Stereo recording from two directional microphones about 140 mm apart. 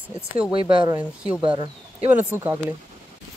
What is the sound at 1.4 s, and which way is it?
Speech, 35° right (ahead or behind).